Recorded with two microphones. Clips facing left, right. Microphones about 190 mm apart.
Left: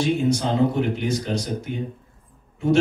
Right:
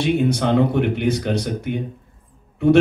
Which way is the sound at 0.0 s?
60° right (ahead or behind).